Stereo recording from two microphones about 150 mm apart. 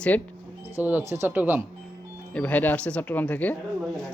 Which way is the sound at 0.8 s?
10° right (ahead or behind).